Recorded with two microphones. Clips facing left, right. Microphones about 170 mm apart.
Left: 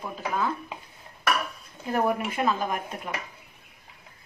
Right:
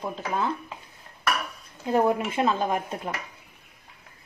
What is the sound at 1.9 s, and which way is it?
Speech, 25° right (ahead or behind).